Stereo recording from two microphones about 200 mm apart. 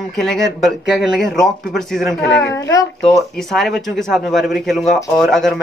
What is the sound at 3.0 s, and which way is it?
Speech, centre (ahead or behind).